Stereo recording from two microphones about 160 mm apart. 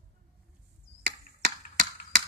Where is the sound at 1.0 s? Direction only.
80° right.